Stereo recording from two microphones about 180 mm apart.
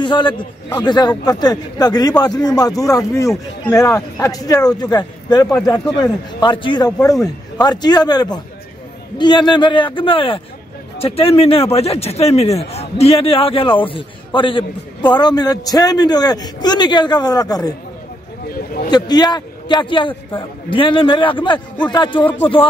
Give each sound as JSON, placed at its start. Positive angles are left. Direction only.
{"t": 0.0, "sound": "a man's voice", "side_deg": 25}
{"t": 18.9, "sound": "a man's voice", "side_deg": 25}